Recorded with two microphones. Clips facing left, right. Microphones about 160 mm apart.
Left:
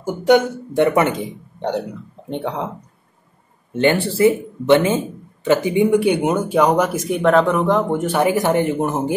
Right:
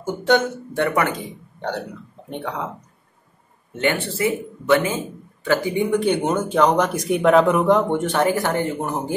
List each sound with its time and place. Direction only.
0.0 s speech: 10° left (ahead or behind)
2.2 s speech: 30° left (ahead or behind)
3.7 s speech: 30° left (ahead or behind)